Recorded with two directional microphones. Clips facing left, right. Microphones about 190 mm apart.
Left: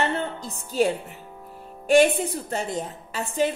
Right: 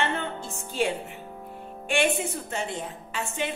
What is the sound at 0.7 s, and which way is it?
A woman's voice, 40° left (ahead or behind).